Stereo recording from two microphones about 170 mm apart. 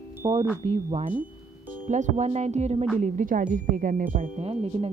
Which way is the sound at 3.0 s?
50° right (ahead or behind).